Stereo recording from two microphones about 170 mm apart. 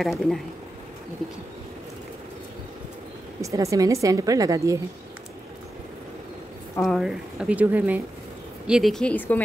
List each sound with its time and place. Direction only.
0.0 s speech: centre (ahead or behind)
3.3 s a woman's voice: 20° right (ahead or behind)
6.8 s speech: centre (ahead or behind)